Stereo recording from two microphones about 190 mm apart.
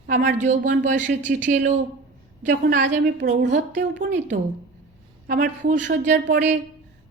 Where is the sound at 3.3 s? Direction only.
40° right (ahead or behind).